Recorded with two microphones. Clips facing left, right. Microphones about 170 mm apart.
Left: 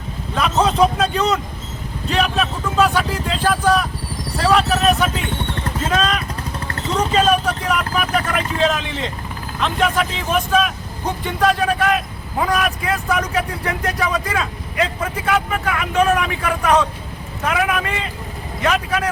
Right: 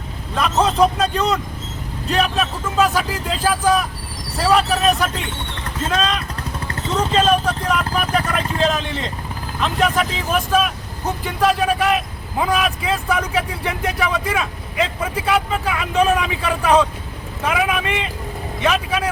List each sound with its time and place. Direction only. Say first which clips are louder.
0.3 s speech: even; centre (ahead or behind)